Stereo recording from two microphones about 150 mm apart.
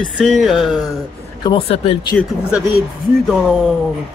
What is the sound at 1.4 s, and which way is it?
Speech, 40° left (ahead or behind).